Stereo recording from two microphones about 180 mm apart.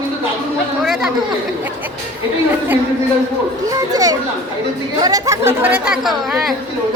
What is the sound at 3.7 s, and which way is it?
A woman's voice, 20° right (ahead or behind).